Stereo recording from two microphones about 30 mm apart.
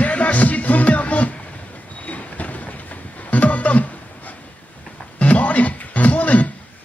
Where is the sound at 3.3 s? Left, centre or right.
Left.